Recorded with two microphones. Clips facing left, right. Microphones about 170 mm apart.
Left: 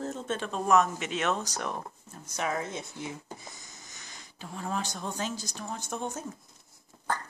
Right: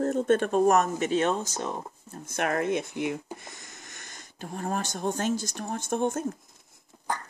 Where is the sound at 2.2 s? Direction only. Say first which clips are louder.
Right 5 dB; 60° right (ahead or behind).